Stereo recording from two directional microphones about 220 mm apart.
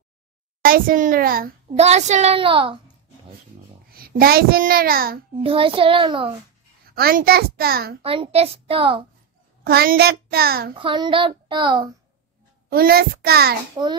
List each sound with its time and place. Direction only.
0.6 s a child's voice: 40° right (ahead or behind)
1.8 s a child's voice: 30° right (ahead or behind)
3.9 s a child's voice: 45° right (ahead or behind)
5.4 s a child's voice: 25° right (ahead or behind)
7.0 s a child's voice: 45° right (ahead or behind)
8.0 s a child's voice: 25° right (ahead or behind)
9.7 s a child's voice: 45° right (ahead or behind)
10.8 s a child's voice: 20° right (ahead or behind)
12.6 s a child's voice: 45° right (ahead or behind)